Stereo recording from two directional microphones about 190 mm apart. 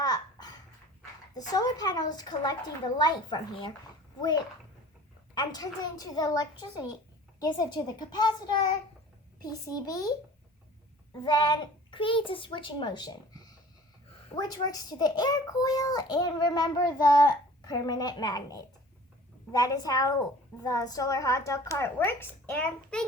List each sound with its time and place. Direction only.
0.0 s babbling: 20° left (ahead or behind)
1.3 s a child's voice: 20° left (ahead or behind)
5.3 s a child's voice: 20° left (ahead or behind)
11.2 s a child's voice: 25° left (ahead or behind)
14.3 s a child's voice: 20° left (ahead or behind)